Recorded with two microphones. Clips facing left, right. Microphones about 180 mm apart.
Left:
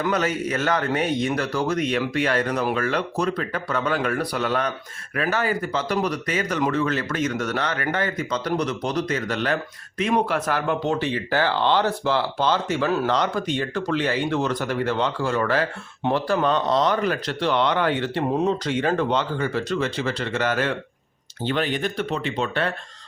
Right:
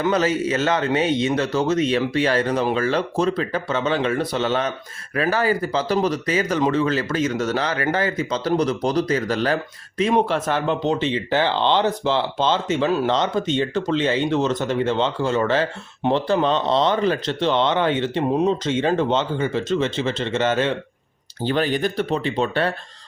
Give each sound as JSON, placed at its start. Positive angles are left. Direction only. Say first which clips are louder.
{"t": 0.0, "sound": "speech", "louder": "right 4 dB", "side_deg": -30}
{"t": 21.4, "sound": "speech", "louder": "right 3 dB", "side_deg": -40}